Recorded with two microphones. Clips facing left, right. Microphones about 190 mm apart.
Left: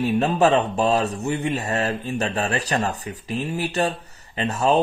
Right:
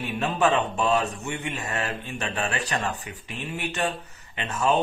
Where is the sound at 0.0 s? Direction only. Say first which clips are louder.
Left 6 dB; 35° left (ahead or behind).